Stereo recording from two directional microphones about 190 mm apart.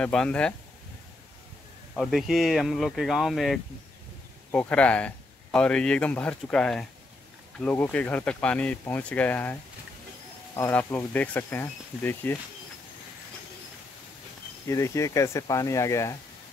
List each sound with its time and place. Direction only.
0.0 s speech: 5° left (ahead or behind)
2.0 s speech: centre (ahead or behind)
14.7 s speech: 15° left (ahead or behind)